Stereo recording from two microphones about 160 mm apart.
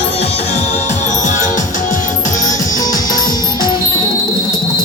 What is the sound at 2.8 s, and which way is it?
Music, 25° left (ahead or behind).